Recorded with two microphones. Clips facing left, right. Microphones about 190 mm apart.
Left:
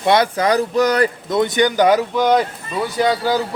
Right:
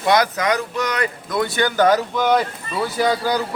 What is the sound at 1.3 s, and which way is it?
Speech, 20° left (ahead or behind).